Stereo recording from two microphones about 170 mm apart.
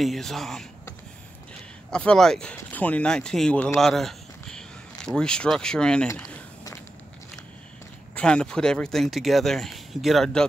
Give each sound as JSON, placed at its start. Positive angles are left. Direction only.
{"t": 0.0, "sound": "speech", "side_deg": 0}
{"t": 1.9, "sound": "a man's voice", "side_deg": 5}
{"t": 8.1, "sound": "speech", "side_deg": 5}